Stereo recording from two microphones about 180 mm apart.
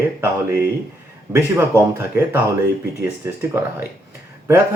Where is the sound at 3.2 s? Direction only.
15° right (ahead or behind).